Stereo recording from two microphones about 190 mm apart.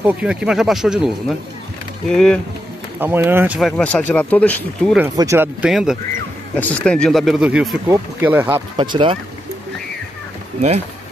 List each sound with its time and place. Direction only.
0.0 s speech: 5° right (ahead or behind)
3.0 s speech: 10° right (ahead or behind); by 4.9 s 5° left (ahead or behind)
5.1 s speech: 15° right (ahead or behind)
5.7 s speech: centre (ahead or behind)
8.7 s speech: 25° right (ahead or behind)